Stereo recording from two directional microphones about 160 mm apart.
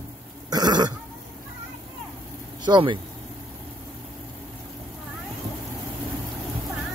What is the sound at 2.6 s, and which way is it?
Speech, 30° right (ahead or behind).